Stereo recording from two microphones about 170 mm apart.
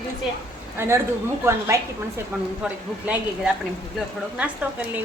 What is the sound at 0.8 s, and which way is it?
A woman's voice, 15° right (ahead or behind).